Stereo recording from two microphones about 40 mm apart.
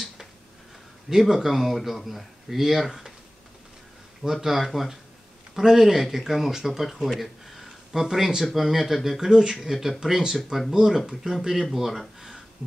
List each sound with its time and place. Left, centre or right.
1.1 s speech: centre
4.2 s speech: centre
9.6 s speech: centre
11.6 s speech: centre